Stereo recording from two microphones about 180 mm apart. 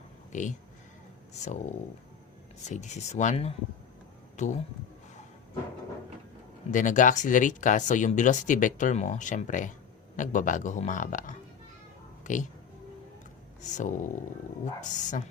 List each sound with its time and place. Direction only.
0.3 s speech: 45° left (ahead or behind)
2.6 s speech: 40° left (ahead or behind)
6.7 s speech: 45° left (ahead or behind)
13.6 s speech: 45° left (ahead or behind)